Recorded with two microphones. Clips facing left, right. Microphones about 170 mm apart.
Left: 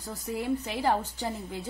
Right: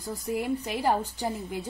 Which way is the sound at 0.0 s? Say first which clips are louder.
Right 3 dB; 10° right (ahead or behind).